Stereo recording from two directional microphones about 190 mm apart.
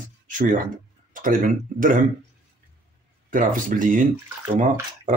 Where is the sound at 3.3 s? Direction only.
45° right (ahead or behind).